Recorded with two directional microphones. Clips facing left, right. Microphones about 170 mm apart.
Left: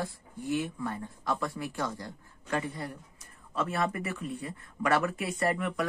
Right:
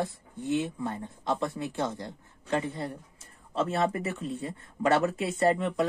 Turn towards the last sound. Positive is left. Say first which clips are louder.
# right 5 dB
turn(degrees=-25)  # may be behind; listen again after turning